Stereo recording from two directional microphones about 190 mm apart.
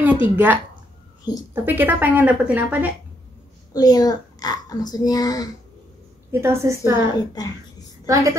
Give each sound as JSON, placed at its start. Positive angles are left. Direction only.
{"t": 0.0, "sound": "speech", "side_deg": -10}
{"t": 3.7, "sound": "a child's voice", "side_deg": 20}
{"t": 6.3, "sound": "speech", "side_deg": -15}
{"t": 7.4, "sound": "a child's voice", "side_deg": 20}
{"t": 8.1, "sound": "speech", "side_deg": -15}